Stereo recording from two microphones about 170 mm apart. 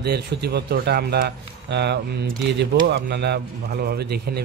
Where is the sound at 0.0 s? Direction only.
70° right (ahead or behind).